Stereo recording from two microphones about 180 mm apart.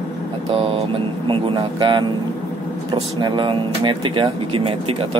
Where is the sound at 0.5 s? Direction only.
30° right (ahead or behind).